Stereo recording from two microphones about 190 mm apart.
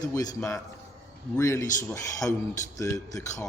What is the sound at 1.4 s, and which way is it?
Speech, 15° left (ahead or behind).